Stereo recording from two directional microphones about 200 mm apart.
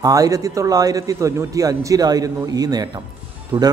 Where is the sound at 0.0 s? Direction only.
15° right (ahead or behind).